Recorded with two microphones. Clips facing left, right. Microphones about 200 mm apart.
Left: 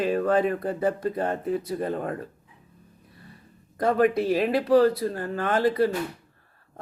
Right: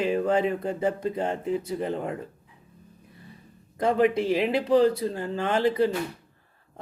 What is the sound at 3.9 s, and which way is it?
Speech, 15° right (ahead or behind).